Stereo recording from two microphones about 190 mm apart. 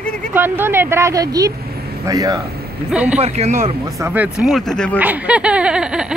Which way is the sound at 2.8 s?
5° right (ahead or behind).